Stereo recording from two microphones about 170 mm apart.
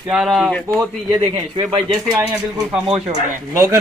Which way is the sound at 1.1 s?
30° right (ahead or behind).